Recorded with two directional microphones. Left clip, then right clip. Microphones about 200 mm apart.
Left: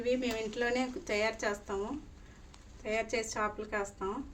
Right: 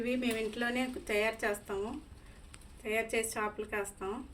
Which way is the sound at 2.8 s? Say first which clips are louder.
Right 1 dB; 50° left (ahead or behind).